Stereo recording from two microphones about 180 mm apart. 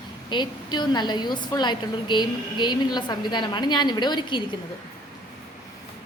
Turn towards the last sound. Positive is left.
turn(degrees=25)  # may be behind; listen again after turning